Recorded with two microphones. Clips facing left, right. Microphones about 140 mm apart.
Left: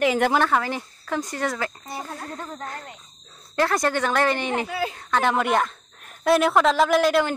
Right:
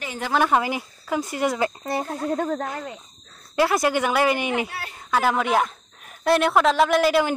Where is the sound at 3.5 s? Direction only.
10° right (ahead or behind).